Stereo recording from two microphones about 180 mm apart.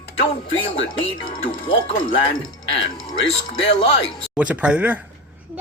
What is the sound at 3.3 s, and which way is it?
Speech, 30° left (ahead or behind).